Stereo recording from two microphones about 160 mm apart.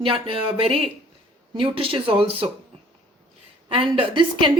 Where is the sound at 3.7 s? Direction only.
30° right (ahead or behind).